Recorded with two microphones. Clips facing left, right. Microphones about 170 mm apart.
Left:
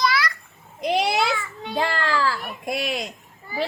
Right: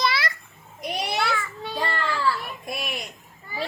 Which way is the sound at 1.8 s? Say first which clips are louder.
Left 5 dB; 90° left.